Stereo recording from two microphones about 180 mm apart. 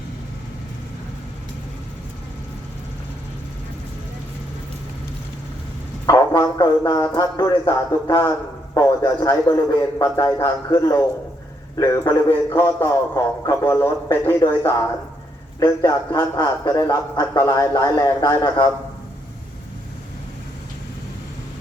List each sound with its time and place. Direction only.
6.1 s a man's voice: 20° left (ahead or behind)